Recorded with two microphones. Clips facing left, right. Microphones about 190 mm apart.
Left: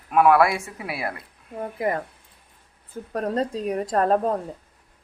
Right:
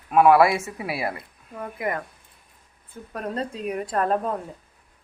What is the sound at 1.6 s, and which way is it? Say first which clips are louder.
Speech: left 3 dB; 30° left (ahead or behind).